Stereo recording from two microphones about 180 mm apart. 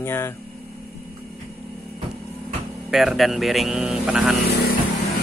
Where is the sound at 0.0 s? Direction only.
15° left (ahead or behind).